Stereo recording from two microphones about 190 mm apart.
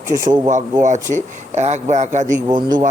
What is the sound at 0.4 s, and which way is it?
A man's voice, 40° right (ahead or behind).